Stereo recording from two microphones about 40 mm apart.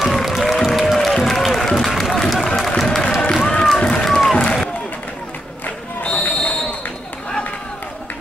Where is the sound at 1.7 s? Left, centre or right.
Centre.